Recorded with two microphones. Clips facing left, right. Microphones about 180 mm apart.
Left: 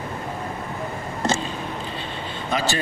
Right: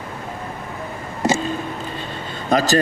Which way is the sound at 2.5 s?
40° right (ahead or behind).